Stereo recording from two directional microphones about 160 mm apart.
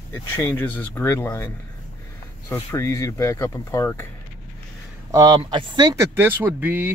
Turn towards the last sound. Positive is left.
turn(degrees=-15)  # may be behind; listen again after turning